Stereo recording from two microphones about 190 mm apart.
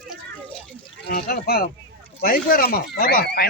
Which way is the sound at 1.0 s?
50° left (ahead or behind).